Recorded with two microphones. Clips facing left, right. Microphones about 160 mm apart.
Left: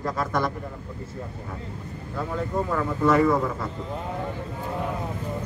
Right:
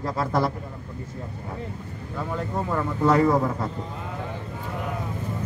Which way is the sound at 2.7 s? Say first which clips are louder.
Right 1 dB; 20° right (ahead or behind).